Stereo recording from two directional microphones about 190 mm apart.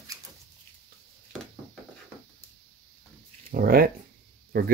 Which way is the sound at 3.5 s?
55° right (ahead or behind).